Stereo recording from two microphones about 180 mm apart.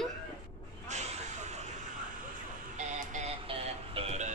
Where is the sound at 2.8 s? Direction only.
40° right (ahead or behind).